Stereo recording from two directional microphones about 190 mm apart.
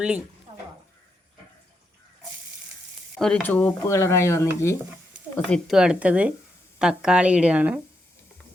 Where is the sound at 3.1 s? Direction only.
5° left (ahead or behind).